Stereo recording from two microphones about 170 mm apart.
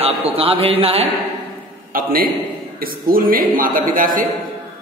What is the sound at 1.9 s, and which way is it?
A man's voice, 60° right (ahead or behind).